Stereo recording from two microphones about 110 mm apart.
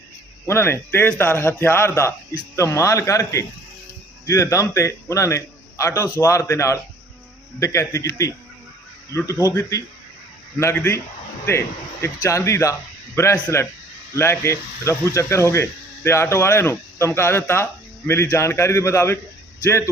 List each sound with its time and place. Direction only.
0.4 s speech: 20° left (ahead or behind)
12.0 s speech: 25° left (ahead or behind)